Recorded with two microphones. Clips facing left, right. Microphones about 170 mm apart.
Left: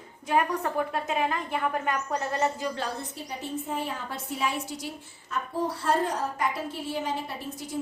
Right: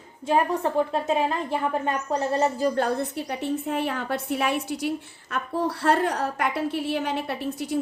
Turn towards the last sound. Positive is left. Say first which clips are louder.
# right 7 dB
turn(degrees=-70)  # may be behind; listen again after turning